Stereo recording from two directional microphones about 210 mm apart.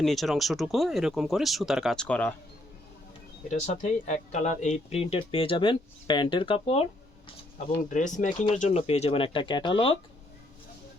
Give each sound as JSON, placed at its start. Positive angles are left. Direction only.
{"t": 0.0, "sound": "speech", "side_deg": 0}
{"t": 3.5, "sound": "speech", "side_deg": 35}
{"t": 7.9, "sound": "speech", "side_deg": 35}